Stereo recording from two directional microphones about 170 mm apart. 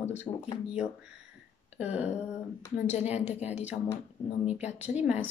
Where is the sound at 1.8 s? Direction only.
10° right (ahead or behind).